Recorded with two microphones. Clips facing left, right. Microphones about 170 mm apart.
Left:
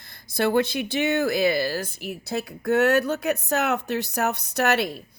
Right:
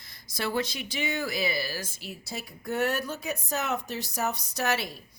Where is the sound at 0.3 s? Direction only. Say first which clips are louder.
Left 8 dB; 60° left (ahead or behind).